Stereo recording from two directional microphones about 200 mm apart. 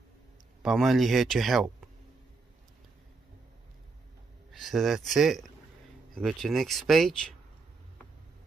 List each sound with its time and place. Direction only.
0.6 s speech: centre (ahead or behind)
4.5 s speech: centre (ahead or behind)